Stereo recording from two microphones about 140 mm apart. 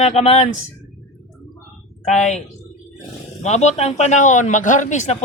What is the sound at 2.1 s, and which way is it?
Speech, 55° left (ahead or behind).